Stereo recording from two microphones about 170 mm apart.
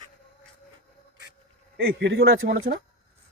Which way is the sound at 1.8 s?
85° right.